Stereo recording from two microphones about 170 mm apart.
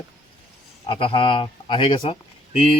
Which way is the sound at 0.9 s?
30° left (ahead or behind).